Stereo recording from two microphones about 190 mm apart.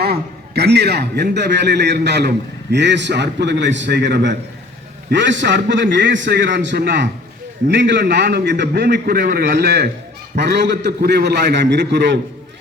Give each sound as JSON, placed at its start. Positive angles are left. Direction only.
{"t": 0.0, "sound": "a man's voice", "side_deg": -55}